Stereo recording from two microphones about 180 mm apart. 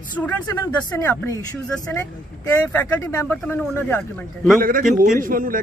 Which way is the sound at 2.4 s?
10° left (ahead or behind).